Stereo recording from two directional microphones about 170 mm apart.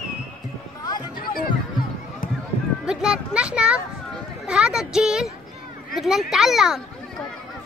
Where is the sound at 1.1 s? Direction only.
60° left (ahead or behind).